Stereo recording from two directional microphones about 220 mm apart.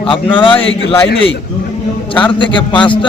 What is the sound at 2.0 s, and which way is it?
Speech, 20° left (ahead or behind).